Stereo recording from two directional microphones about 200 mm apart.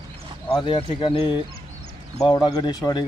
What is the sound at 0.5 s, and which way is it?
Speech, 25° left (ahead or behind).